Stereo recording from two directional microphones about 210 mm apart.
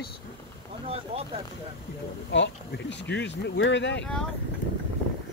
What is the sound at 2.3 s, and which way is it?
Speech, 55° left (ahead or behind).